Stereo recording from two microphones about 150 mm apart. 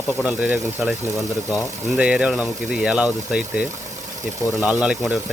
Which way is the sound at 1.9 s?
5° right (ahead or behind).